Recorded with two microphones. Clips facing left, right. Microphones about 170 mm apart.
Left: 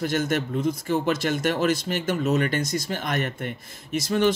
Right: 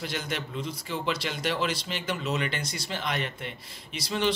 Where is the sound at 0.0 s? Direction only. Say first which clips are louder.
Left 9 dB; 45° left (ahead or behind).